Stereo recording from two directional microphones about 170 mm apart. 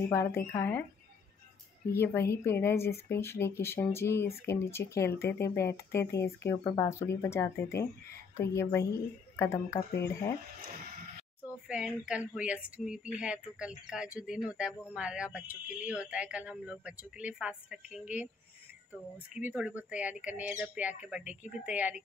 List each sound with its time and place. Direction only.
0.1 s speech: 15° left (ahead or behind)
2.0 s speech: 15° left (ahead or behind)
11.6 s a woman's voice: 5° right (ahead or behind)
19.3 s speech: 10° right (ahead or behind)